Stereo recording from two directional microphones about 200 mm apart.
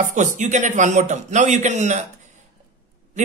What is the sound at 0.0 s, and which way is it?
A man's voice, 40° right (ahead or behind).